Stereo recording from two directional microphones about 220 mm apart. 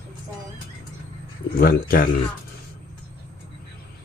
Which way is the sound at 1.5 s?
40° left (ahead or behind).